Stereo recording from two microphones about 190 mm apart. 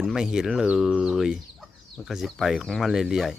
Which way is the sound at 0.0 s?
Centre (ahead or behind).